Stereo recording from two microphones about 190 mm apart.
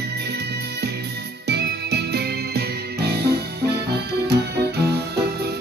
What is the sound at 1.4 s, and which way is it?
Music, 60° right (ahead or behind).